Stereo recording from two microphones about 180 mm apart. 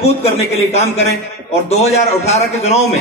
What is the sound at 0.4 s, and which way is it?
A man's voice, 35° left (ahead or behind).